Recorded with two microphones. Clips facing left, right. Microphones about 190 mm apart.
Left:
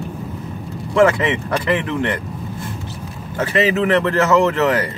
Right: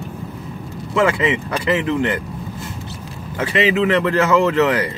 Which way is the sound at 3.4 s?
40° left (ahead or behind).